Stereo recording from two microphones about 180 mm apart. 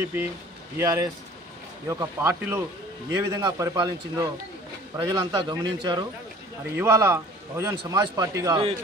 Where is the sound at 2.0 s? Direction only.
15° right (ahead or behind).